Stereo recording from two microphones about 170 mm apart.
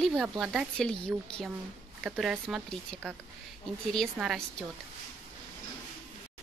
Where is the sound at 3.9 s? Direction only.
Centre (ahead or behind).